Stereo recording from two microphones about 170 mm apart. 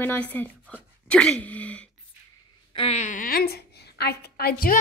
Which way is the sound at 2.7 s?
35° left (ahead or behind).